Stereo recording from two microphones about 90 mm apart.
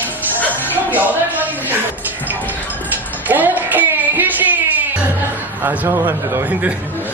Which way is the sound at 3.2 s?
20° right (ahead or behind).